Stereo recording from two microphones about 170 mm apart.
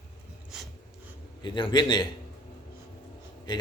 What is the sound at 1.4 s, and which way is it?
Speech, 25° left (ahead or behind).